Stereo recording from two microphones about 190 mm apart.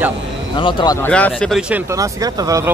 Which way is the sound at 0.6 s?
25° left (ahead or behind).